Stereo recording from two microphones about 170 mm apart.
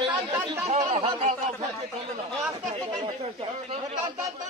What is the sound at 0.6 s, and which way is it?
Chatter, 40° right (ahead or behind).